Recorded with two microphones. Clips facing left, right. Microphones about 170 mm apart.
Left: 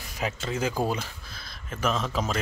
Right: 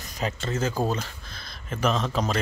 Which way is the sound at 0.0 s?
5° left (ahead or behind).